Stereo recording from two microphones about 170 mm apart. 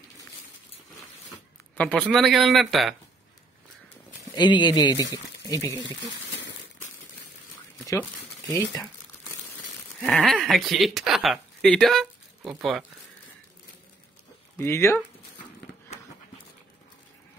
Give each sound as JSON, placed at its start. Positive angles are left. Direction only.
{"t": 1.8, "sound": "a man's voice", "side_deg": 5}
{"t": 4.4, "sound": "speech", "side_deg": 25}
{"t": 7.8, "sound": "speech", "side_deg": 20}
{"t": 9.9, "sound": "speech", "side_deg": 5}
{"t": 14.6, "sound": "speech", "side_deg": 15}